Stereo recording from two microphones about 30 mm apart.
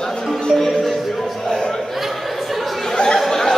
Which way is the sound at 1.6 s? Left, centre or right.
Centre.